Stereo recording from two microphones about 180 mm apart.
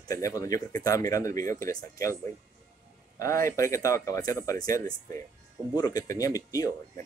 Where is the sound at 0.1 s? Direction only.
20° left (ahead or behind).